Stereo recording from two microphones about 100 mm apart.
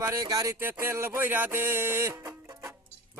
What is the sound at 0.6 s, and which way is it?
Music, 20° right (ahead or behind).